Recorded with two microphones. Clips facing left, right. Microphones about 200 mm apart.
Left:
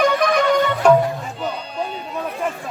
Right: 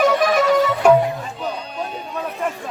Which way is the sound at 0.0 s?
5° right (ahead or behind).